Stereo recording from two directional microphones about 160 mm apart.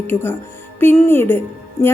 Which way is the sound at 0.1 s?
15° left (ahead or behind).